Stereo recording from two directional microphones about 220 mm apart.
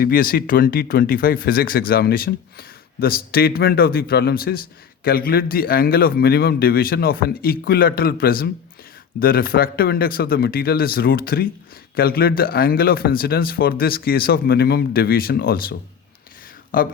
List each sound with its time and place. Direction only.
0.0 s speech: 40° left (ahead or behind)